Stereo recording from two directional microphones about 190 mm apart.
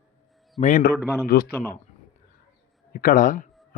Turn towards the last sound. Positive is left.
turn(degrees=45)  # may be behind; listen again after turning